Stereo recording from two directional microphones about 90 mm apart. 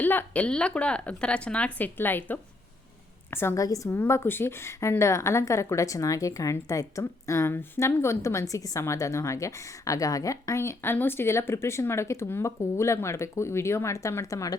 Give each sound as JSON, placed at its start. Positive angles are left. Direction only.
{"t": 0.0, "sound": "a woman's voice", "side_deg": 20}
{"t": 3.6, "sound": "a woman's voice", "side_deg": 40}